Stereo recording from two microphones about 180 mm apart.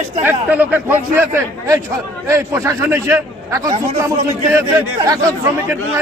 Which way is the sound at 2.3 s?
15° right (ahead or behind).